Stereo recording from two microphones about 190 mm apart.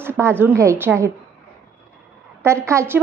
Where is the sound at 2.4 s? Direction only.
15° right (ahead or behind).